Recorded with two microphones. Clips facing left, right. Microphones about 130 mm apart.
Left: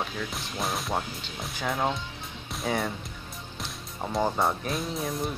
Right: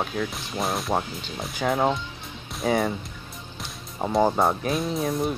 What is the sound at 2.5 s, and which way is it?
Music, centre (ahead or behind).